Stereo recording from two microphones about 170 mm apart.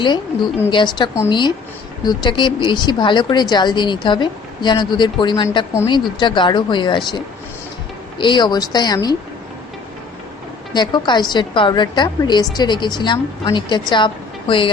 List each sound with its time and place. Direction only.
0.0 s a woman's voice: 25° left (ahead or behind)
8.2 s a woman's voice: 25° left (ahead or behind)
10.8 s a woman's voice: 25° left (ahead or behind)